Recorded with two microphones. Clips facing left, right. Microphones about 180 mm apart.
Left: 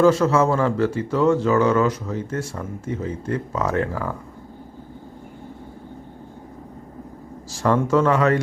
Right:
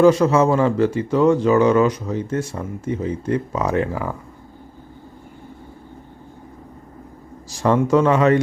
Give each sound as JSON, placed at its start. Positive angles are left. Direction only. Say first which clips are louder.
{"t": 0.0, "sound": "speech", "louder": "right 3 dB", "side_deg": -15}
{"t": 7.5, "sound": "speech", "louder": "right 2 dB", "side_deg": -15}